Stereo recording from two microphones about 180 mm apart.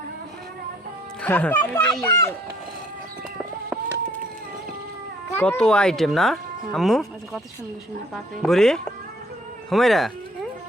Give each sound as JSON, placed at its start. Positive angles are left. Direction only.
{"t": 1.2, "sound": "speech", "side_deg": 10}
{"t": 5.3, "sound": "speech", "side_deg": 10}